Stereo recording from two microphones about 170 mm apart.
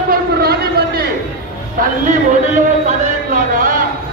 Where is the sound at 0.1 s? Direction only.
65° right (ahead or behind).